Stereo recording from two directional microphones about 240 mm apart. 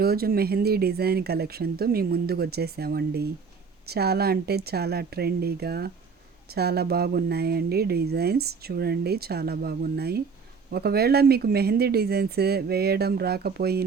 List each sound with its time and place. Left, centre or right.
0.0 s speech: right